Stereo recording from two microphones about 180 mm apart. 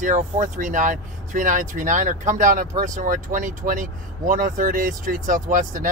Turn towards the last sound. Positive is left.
turn(degrees=-45)  # may be behind; listen again after turning